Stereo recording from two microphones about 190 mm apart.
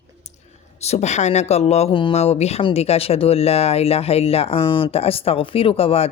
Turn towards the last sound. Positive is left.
turn(degrees=30)  # may be behind; listen again after turning